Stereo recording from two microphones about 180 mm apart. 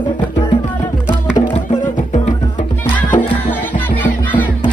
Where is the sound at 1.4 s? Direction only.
35° left (ahead or behind).